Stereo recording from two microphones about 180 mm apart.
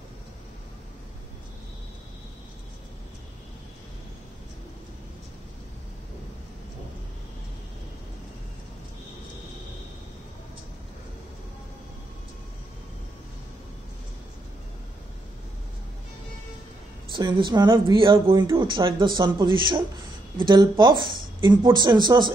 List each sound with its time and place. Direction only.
17.1 s speech: 25° right (ahead or behind)